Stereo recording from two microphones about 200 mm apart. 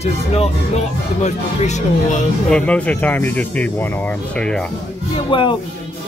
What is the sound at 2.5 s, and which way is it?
Speech, 5° left (ahead or behind).